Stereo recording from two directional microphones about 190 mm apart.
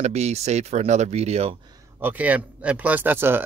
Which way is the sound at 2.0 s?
10° right (ahead or behind).